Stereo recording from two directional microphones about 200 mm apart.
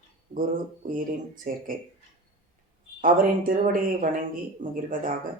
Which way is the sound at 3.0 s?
45° right (ahead or behind).